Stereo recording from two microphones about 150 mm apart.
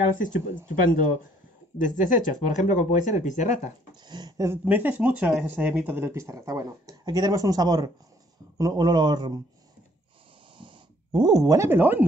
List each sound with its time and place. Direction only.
0.7 s speech: 65° left (ahead or behind)
4.1 s speech: 25° right (ahead or behind)
4.6 s speech: 10° right (ahead or behind); by 9.4 s 30° right (ahead or behind)
10.6 s a sound: 25° right (ahead or behind)